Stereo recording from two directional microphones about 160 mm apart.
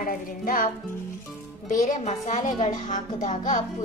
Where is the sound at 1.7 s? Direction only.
50° left (ahead or behind).